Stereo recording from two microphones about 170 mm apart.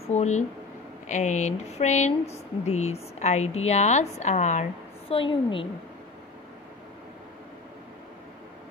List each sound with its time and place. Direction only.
0.1 s speech: 45° left (ahead or behind)